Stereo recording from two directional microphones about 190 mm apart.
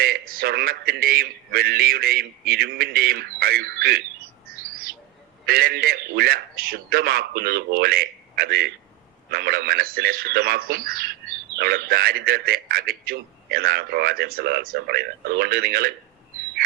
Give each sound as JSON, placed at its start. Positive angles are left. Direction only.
{"t": 0.0, "sound": "a man's voice", "side_deg": -50}
{"t": 4.4, "sound": "bird", "side_deg": -50}
{"t": 5.5, "sound": "a man's voice", "side_deg": -55}